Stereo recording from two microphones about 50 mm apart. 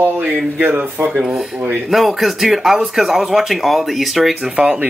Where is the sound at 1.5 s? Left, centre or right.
Right.